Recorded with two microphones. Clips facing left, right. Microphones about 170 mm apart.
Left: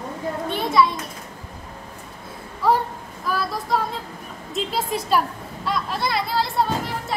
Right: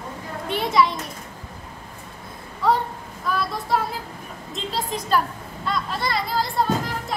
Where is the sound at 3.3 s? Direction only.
Centre (ahead or behind).